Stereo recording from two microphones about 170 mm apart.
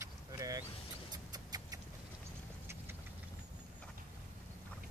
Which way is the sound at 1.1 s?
20° right (ahead or behind).